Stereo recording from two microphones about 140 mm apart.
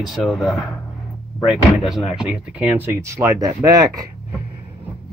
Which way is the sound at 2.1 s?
5° right (ahead or behind).